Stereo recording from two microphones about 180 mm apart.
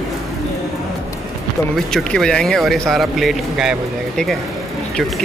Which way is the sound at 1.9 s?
5° left (ahead or behind).